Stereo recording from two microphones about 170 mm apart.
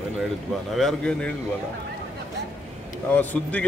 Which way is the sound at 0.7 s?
5° left (ahead or behind).